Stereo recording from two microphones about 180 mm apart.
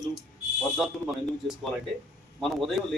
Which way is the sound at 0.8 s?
5° right (ahead or behind).